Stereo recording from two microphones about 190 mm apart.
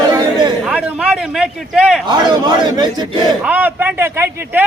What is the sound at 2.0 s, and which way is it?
A man's voice, 25° right (ahead or behind).